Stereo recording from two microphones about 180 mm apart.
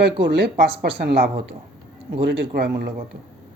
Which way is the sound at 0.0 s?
65° right (ahead or behind).